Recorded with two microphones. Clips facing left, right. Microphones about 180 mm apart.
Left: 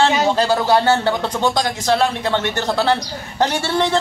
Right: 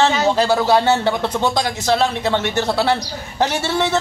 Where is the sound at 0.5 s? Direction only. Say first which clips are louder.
Even; 10° right (ahead or behind).